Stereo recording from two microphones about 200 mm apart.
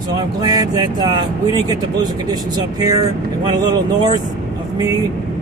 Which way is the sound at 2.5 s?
20° right (ahead or behind).